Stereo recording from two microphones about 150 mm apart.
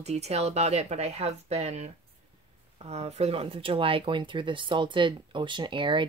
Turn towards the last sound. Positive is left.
turn(degrees=-35)  # may be behind; listen again after turning